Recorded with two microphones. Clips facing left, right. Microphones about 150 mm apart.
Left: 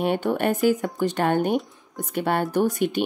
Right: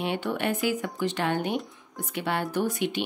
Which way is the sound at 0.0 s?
45° left (ahead or behind).